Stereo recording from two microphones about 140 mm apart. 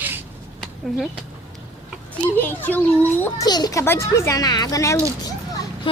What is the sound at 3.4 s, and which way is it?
Speech, 30° left (ahead or behind).